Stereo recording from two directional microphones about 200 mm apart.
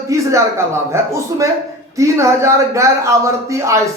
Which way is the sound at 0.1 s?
15° right (ahead or behind).